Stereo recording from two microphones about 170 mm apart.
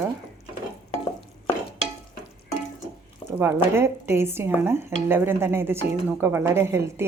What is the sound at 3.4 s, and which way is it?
A woman's voice, 15° right (ahead or behind).